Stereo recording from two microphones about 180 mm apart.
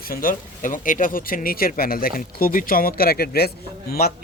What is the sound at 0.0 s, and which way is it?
Speech, 55° left (ahead or behind).